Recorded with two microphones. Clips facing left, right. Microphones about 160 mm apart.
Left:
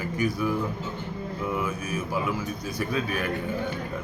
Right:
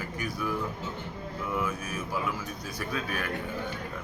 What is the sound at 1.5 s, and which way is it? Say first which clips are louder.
A man's voice: left 1 dB; 5° left (ahead or behind).